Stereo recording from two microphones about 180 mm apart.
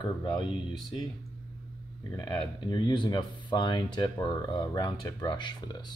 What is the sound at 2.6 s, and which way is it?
Speech, 25° left (ahead or behind).